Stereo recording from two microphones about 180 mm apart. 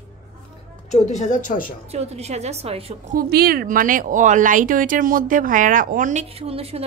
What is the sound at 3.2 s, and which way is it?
Speech, 60° right (ahead or behind).